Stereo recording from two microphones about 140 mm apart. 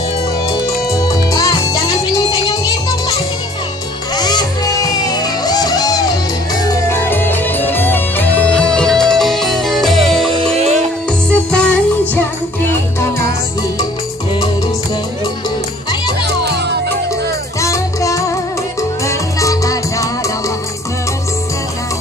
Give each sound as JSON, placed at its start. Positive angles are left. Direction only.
{"t": 0.9, "sound": "music", "side_deg": 25}
{"t": 6.9, "sound": "music", "side_deg": 15}
{"t": 10.3, "sound": "music", "side_deg": -45}
{"t": 11.1, "sound": "music", "side_deg": 5}
{"t": 17.6, "sound": "music", "side_deg": 20}